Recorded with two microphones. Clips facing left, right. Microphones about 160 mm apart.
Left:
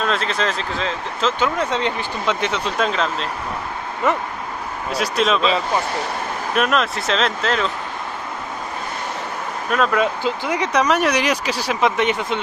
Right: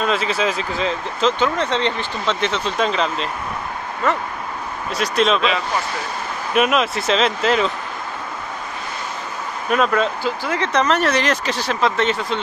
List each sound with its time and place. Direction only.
0.0 s speech: 5° right (ahead or behind)
1.4 s speech: 10° left (ahead or behind)
4.0 s speech: 20° left (ahead or behind)
4.9 s speech: 5° left (ahead or behind)
6.5 s speech: 5° right (ahead or behind)
9.9 s speech: 15° left (ahead or behind)